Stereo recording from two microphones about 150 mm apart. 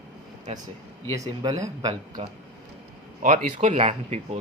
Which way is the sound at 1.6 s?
25° right (ahead or behind).